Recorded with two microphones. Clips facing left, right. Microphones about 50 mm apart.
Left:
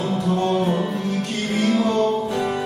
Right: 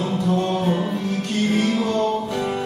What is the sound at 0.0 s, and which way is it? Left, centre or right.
Music, centre.